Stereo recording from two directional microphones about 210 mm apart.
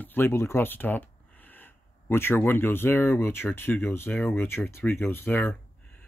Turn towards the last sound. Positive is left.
turn(degrees=10)  # may be behind; listen again after turning